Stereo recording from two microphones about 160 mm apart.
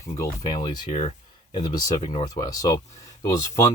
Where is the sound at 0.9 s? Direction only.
45° left (ahead or behind).